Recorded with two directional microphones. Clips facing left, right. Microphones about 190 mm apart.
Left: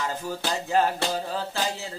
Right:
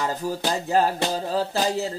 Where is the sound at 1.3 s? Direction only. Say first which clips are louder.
Right 6 dB; 40° right (ahead or behind).